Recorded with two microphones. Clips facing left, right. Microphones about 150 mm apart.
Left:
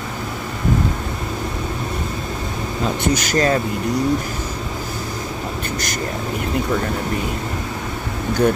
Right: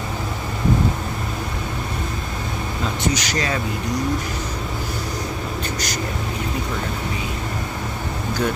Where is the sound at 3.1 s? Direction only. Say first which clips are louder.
Left 6 dB; 50° left (ahead or behind).